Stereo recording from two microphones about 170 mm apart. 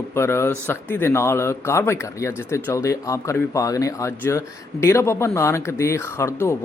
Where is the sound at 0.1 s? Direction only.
15° left (ahead or behind).